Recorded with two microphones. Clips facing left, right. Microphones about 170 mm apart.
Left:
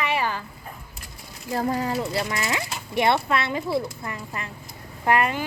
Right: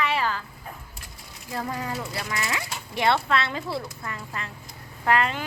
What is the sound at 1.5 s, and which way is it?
A child's voice, 35° left (ahead or behind).